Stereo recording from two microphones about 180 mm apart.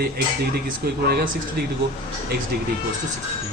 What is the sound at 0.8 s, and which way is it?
Speech, 55° right (ahead or behind).